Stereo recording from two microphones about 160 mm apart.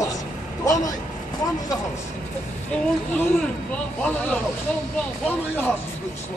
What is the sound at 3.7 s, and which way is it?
Speech, 5° left (ahead or behind).